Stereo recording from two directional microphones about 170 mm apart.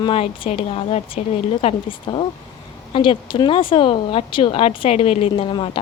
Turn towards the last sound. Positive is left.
turn(degrees=30)  # may be behind; listen again after turning